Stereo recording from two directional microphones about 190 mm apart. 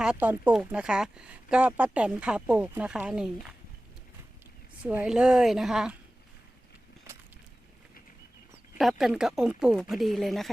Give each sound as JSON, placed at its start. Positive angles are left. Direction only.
{"t": 0.0, "sound": "speech", "side_deg": -5}
{"t": 4.8, "sound": "speech", "side_deg": -5}
{"t": 7.1, "sound": "a sound", "side_deg": -15}
{"t": 8.8, "sound": "speech", "side_deg": 0}